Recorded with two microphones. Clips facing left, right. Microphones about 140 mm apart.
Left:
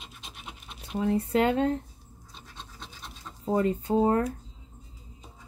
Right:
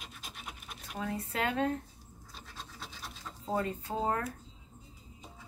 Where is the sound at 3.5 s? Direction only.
30° left (ahead or behind).